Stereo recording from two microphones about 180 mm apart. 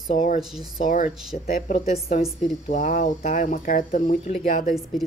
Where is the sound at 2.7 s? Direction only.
50° left (ahead or behind).